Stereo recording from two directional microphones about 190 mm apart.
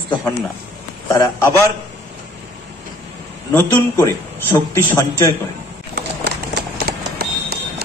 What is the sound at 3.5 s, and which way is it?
A man's voice, 10° left (ahead or behind).